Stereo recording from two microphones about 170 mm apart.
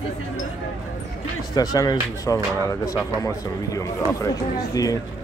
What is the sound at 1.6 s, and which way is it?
Speech, 20° left (ahead or behind).